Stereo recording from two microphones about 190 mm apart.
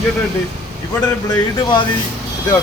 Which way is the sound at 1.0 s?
20° left (ahead or behind).